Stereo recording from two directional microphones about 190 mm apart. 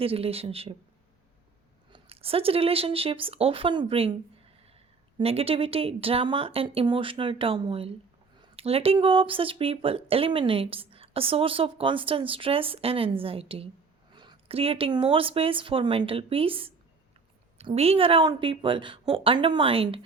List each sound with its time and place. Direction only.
0.0 s speech: 30° right (ahead or behind)
1.9 s speech: 30° right (ahead or behind)
5.1 s speech: 30° right (ahead or behind)